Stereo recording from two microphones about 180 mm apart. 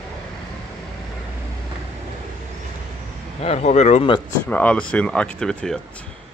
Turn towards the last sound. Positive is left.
turn(degrees=5)  # may be behind; listen again after turning